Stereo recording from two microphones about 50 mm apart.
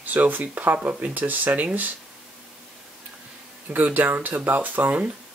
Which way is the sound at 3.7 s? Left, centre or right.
Right.